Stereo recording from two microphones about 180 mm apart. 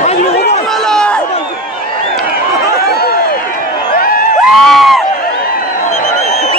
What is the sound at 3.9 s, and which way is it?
Crowd, 55° left (ahead or behind).